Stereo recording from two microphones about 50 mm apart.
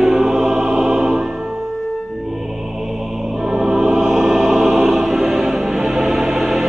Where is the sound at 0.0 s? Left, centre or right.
Centre.